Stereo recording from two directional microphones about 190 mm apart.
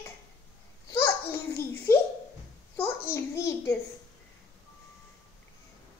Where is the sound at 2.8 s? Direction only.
15° left (ahead or behind).